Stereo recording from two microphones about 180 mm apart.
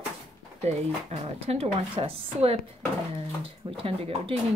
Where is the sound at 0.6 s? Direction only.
35° right (ahead or behind).